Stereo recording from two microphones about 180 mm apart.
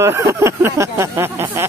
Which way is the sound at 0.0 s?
15° right (ahead or behind).